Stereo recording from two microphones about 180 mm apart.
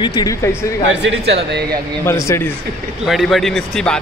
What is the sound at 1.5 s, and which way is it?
Speech, 65° right (ahead or behind).